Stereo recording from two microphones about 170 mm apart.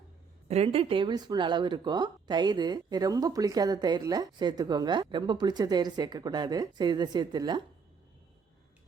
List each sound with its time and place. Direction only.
0.4 s speech: 35° right (ahead or behind)